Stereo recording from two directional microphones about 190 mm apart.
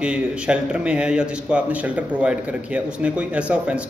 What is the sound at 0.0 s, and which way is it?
A man's voice, 5° right (ahead or behind).